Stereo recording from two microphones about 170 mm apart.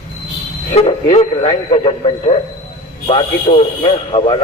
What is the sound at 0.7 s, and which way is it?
A man's voice, 35° left (ahead or behind).